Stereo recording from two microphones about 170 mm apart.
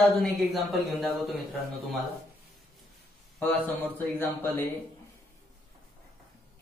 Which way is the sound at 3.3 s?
10° left (ahead or behind).